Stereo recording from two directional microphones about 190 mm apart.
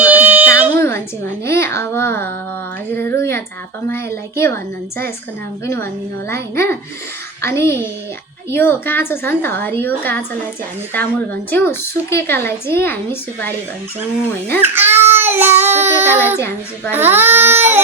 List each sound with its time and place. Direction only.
0.0 s a sound: 10° right (ahead or behind)
0.8 s a sound: 15° left (ahead or behind)
3.8 s a woman's voice: 15° left (ahead or behind)
5.6 s a woman's voice: 15° left (ahead or behind)
14.6 s speech: 10° right (ahead or behind)
15.6 s child singing: 35° right (ahead or behind)
15.9 s speech: 10° right (ahead or behind)